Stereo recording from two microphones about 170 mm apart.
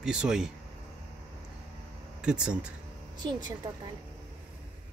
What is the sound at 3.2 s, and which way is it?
Speech, 25° right (ahead or behind).